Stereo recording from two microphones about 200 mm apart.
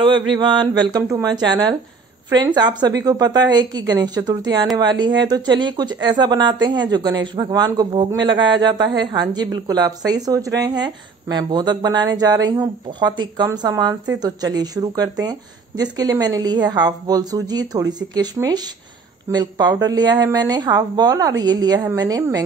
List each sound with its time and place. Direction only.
0.3 s a woman's voice: 25° right (ahead or behind)